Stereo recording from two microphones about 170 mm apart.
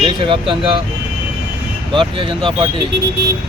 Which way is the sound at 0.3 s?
30° right (ahead or behind).